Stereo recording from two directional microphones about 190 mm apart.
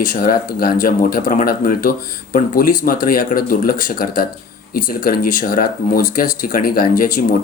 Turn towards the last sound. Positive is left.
turn(degrees=50)  # may be behind; listen again after turning